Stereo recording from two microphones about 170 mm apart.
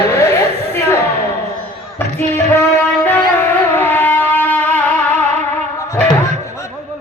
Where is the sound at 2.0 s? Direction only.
15° left (ahead or behind).